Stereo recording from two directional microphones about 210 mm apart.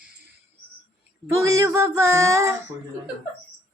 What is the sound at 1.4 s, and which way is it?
Female singing, 15° right (ahead or behind).